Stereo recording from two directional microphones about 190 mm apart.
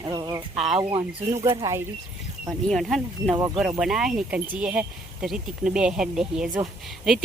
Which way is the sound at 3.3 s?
25° right (ahead or behind).